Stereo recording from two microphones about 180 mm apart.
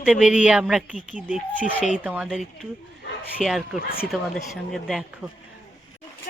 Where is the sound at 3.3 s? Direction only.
Centre (ahead or behind).